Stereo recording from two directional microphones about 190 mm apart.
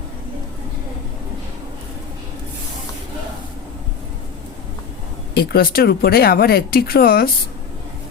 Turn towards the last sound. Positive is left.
turn(degrees=55)  # may be behind; listen again after turning